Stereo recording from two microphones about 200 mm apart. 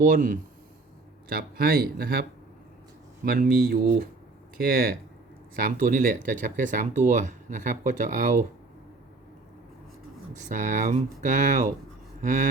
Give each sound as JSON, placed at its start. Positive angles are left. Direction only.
{"t": 0.0, "sound": "speech", "side_deg": -40}
{"t": 3.2, "sound": "speech", "side_deg": -50}
{"t": 10.3, "sound": "speech", "side_deg": -40}